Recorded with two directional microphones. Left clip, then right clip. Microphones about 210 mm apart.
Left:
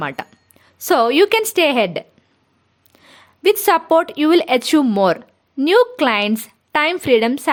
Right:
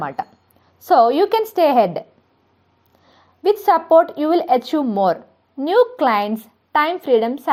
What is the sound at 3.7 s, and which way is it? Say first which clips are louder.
A woman's voice: right 4 dB; 25° left (ahead or behind).